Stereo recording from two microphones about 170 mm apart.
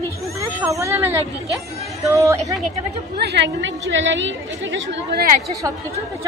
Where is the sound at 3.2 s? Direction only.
85° right.